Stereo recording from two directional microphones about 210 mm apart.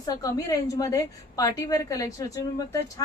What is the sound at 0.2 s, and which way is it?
A woman's voice, 15° left (ahead or behind).